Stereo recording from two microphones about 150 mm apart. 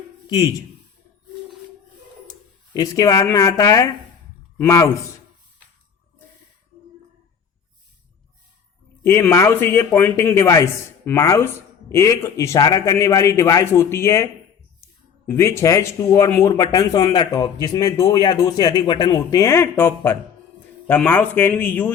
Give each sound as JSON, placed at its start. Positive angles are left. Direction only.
{"t": 0.3, "sound": "a man's voice", "side_deg": 25}
{"t": 2.7, "sound": "a man's voice", "side_deg": 25}
{"t": 9.0, "sound": "a man's voice", "side_deg": 20}
{"t": 15.3, "sound": "a man's voice", "side_deg": 20}